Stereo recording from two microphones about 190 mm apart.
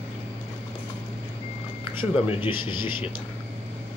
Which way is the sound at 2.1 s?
25° left (ahead or behind).